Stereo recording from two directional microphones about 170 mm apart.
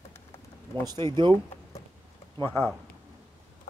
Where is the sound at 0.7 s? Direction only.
25° right (ahead or behind).